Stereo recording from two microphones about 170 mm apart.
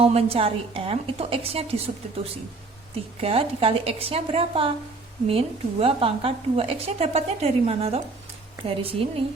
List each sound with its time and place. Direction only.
0.0 s a woman's voice: 35° right (ahead or behind)
3.2 s a woman's voice: 35° right (ahead or behind)